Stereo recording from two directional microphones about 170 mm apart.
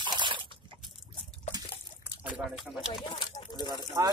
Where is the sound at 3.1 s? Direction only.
25° left (ahead or behind).